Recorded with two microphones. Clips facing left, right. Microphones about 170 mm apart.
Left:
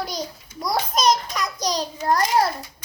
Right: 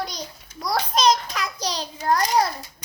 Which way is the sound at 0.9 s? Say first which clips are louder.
Right 1 dB; 45° left (ahead or behind).